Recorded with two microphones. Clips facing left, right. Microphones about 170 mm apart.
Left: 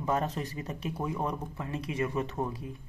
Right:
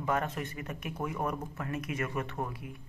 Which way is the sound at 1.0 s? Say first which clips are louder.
Even; 20° left (ahead or behind).